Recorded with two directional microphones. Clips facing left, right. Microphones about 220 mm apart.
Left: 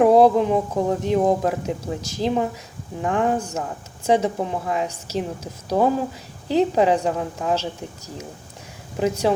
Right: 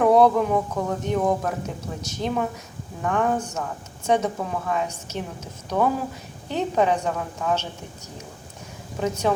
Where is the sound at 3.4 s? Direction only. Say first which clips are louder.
Left 2 dB; 30° left (ahead or behind).